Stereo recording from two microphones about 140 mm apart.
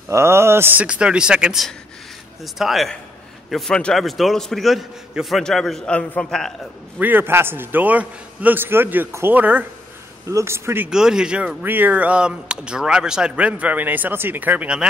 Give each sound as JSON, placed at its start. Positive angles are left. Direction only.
{"t": 0.1, "sound": "a man's voice", "side_deg": -20}
{"t": 7.0, "sound": "speech", "side_deg": -15}
{"t": 10.9, "sound": "speech", "side_deg": -5}